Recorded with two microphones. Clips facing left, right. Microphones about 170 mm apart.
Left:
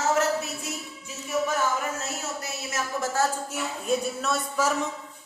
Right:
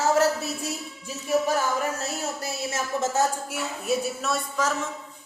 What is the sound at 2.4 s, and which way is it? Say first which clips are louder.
Speech: right 3 dB; 25° right (ahead or behind).